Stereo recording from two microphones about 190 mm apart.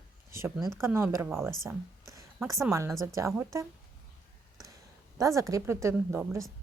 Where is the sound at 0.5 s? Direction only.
Centre (ahead or behind).